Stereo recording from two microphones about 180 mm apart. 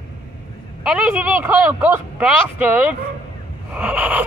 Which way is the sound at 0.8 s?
5° right (ahead or behind).